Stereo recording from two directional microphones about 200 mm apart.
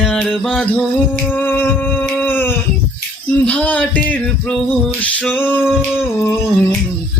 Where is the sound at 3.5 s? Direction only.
5° left (ahead or behind).